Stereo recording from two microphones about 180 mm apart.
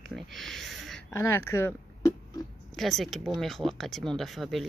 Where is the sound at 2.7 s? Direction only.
Centre (ahead or behind).